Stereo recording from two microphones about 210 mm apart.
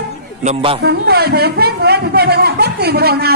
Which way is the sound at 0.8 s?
50° right (ahead or behind).